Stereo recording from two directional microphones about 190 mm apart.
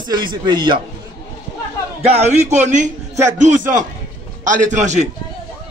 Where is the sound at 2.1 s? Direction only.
35° right (ahead or behind).